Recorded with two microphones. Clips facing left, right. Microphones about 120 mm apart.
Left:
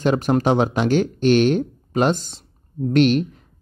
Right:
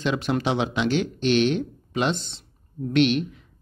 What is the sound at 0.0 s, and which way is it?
A man's voice, 45° left (ahead or behind).